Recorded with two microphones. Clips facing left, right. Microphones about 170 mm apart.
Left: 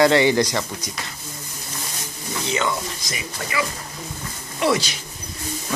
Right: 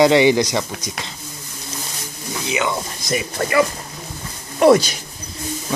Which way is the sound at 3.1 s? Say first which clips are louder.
Right 9 dB; 55° right (ahead or behind).